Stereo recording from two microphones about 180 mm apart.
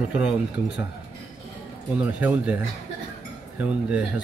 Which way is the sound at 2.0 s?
10° right (ahead or behind).